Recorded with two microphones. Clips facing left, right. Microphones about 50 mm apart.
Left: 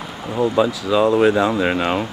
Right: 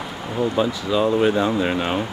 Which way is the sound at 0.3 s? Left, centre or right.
Centre.